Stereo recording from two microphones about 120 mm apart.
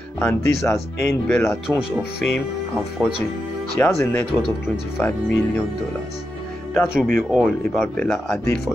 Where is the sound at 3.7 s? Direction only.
20° left (ahead or behind).